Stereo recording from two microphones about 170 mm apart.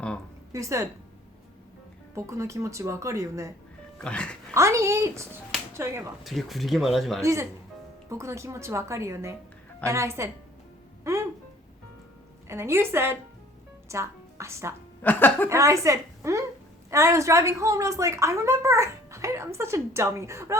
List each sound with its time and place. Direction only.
0.5 s speech: 20° right (ahead or behind)
2.1 s speech: 15° right (ahead or behind)
3.9 s speech: 5° left (ahead or behind)
4.5 s speech: 15° right (ahead or behind)
6.2 s speech: centre (ahead or behind)
7.2 s speech: 15° right (ahead or behind)
11.1 s music: 15° right (ahead or behind)
12.5 s a woman's voice: 15° right (ahead or behind)
15.0 s speech: 10° left (ahead or behind)
15.4 s speech: 15° right (ahead or behind)